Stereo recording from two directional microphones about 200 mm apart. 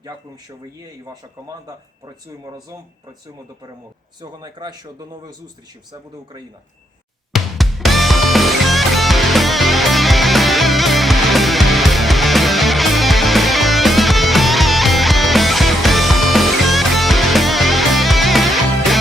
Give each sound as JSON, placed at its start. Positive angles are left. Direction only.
{"t": 1.0, "sound": "speech", "side_deg": -20}
{"t": 4.2, "sound": "speech", "side_deg": -20}
{"t": 7.3, "sound": "music", "side_deg": 0}